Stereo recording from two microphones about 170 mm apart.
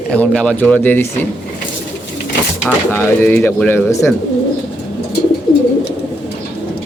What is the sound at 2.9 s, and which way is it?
Speech, 15° left (ahead or behind).